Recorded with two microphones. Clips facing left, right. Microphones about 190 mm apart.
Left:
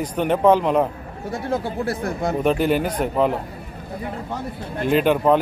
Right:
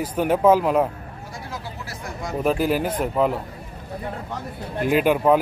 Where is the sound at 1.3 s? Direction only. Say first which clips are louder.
Left 12 dB; 60° left (ahead or behind).